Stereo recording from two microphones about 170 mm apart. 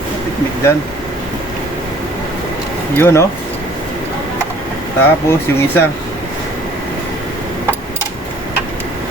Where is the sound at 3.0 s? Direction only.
15° left (ahead or behind).